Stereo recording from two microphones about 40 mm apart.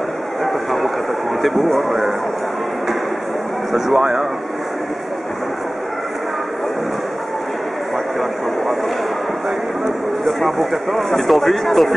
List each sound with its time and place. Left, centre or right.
0.4 s a sound: centre
1.4 s speech: centre
3.7 s speech: centre
10.2 s speech: centre